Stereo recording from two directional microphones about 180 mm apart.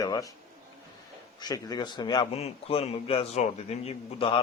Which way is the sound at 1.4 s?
20° left (ahead or behind).